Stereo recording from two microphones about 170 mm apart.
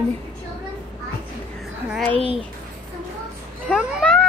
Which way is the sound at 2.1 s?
35° right (ahead or behind).